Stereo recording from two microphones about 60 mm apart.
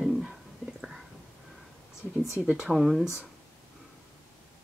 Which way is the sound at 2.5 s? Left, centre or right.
Centre.